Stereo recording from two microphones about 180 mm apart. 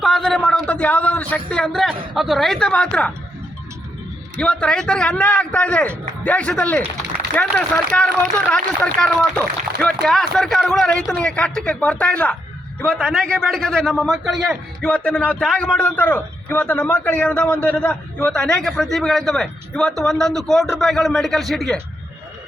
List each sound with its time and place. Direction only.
0.0 s a man's voice: centre (ahead or behind)
4.4 s a man's voice: 5° left (ahead or behind)